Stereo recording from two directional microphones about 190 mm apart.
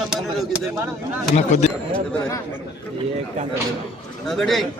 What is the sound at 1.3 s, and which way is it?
Speech, 35° left (ahead or behind).